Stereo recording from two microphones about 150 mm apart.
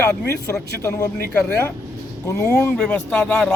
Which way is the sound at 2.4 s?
10° left (ahead or behind).